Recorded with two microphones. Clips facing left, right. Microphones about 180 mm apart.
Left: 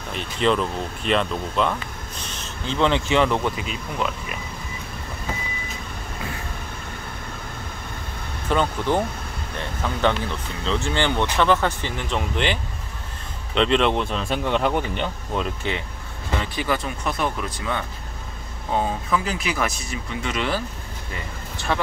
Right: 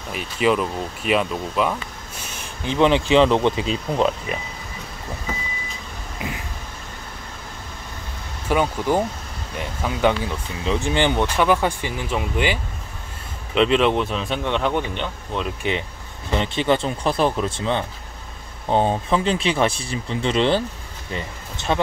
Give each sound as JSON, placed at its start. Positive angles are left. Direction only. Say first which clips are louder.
{"t": 0.1, "sound": "speech", "louder": "right 2 dB", "side_deg": -5}
{"t": 6.2, "sound": "vehicle", "louder": "right 4 dB", "side_deg": -15}
{"t": 8.5, "sound": "speech", "louder": "right 2 dB", "side_deg": -10}
{"t": 13.6, "sound": "speech", "louder": "right 2 dB", "side_deg": -5}
{"t": 16.3, "sound": "speech", "louder": "right 5 dB", "side_deg": -25}